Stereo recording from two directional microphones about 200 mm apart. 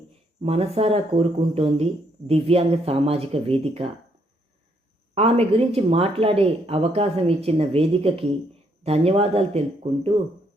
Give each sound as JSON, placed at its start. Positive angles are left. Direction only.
{"t": 0.4, "sound": "speech", "side_deg": -30}
{"t": 5.1, "sound": "speech", "side_deg": -30}